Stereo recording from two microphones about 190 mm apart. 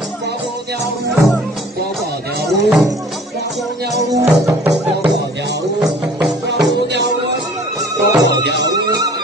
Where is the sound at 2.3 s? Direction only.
60° right (ahead or behind).